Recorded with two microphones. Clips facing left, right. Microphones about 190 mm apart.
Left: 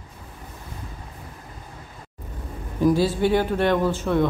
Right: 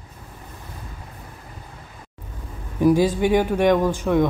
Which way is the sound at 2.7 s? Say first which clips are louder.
Right 2 dB; 15° right (ahead or behind).